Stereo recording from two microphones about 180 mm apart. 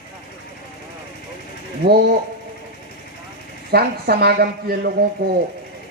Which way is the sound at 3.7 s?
60° right (ahead or behind).